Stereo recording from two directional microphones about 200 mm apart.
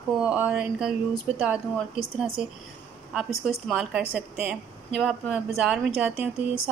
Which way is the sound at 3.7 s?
5° right (ahead or behind).